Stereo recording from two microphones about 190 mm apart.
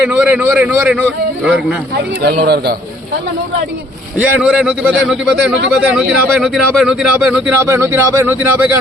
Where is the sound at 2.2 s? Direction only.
55° right (ahead or behind).